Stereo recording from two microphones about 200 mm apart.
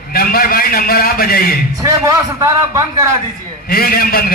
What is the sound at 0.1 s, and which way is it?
A man's voice, 50° left (ahead or behind).